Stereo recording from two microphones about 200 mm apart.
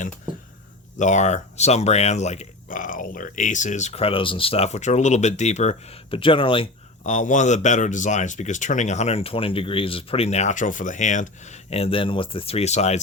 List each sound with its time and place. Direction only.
0.9 s speech: 35° left (ahead or behind)